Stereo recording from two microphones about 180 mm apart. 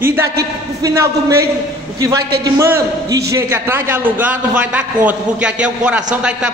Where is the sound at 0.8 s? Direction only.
15° right (ahead or behind).